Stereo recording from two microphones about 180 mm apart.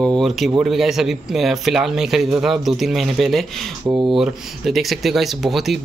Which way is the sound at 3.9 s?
15° right (ahead or behind).